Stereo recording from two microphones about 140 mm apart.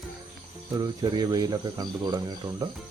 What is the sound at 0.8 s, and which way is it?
Speech, 30° right (ahead or behind).